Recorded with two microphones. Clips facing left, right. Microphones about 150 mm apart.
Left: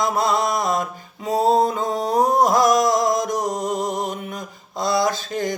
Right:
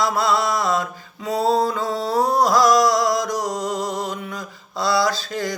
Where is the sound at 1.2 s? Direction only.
45° left (ahead or behind).